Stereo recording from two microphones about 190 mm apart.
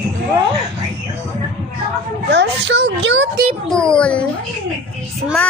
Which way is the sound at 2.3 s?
65° right (ahead or behind).